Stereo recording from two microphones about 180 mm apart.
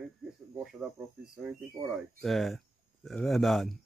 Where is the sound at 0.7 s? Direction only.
Centre (ahead or behind).